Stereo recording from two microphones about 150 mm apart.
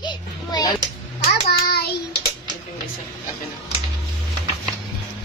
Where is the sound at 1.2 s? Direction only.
90° left.